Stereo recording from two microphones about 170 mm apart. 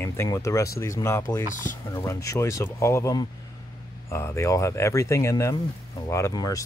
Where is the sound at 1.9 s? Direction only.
15° left (ahead or behind).